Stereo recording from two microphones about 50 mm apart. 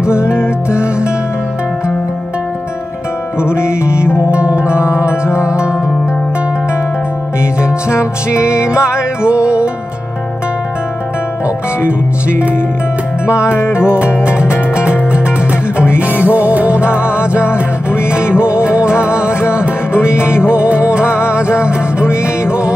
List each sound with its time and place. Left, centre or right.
0.7 s music: right
3.3 s music: left
4.3 s music: right
7.9 s music: right
12.3 s speech: right
13.5 s music: left
14.8 s music: right